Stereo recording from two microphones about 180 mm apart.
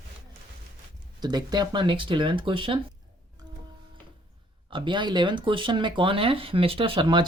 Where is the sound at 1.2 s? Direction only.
25° right (ahead or behind).